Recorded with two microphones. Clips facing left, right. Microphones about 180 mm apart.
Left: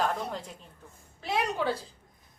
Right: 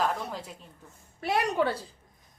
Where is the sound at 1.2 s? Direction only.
60° right (ahead or behind).